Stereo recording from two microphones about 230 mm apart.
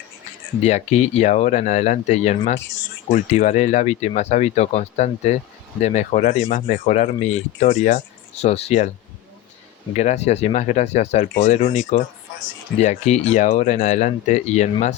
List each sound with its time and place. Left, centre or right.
0.6 s speech: left
9.9 s speech: left
12.8 s speech: left